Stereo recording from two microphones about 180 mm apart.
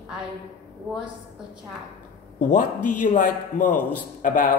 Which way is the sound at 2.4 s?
45° left (ahead or behind).